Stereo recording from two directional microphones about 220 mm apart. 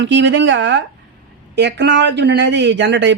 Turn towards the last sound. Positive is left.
turn(degrees=-55)  # may be behind; listen again after turning